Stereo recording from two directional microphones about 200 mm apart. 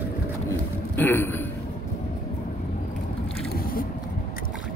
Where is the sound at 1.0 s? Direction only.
10° left (ahead or behind).